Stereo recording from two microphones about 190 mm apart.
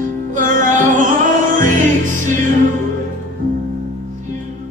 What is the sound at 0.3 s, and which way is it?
Music, 40° right (ahead or behind).